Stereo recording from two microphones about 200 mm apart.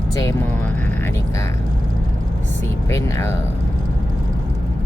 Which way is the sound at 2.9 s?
15° left (ahead or behind).